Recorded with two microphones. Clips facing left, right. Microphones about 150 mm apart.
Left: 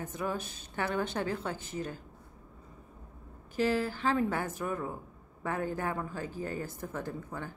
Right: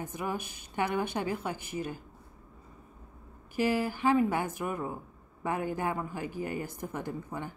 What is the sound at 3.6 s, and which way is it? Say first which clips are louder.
A woman's voice: right 1 dB; 10° right (ahead or behind).